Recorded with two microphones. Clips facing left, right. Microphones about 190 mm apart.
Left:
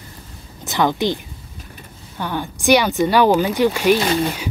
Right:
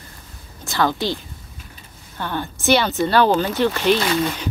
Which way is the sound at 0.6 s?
20° left (ahead or behind).